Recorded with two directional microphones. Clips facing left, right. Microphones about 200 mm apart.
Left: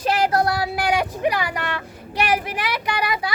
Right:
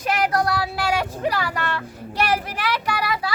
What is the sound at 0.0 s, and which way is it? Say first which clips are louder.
Vehicle: left 2 dB; 30° left (ahead or behind).